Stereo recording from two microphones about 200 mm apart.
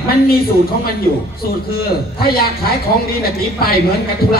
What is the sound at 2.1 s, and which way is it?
Speech, 50° left (ahead or behind).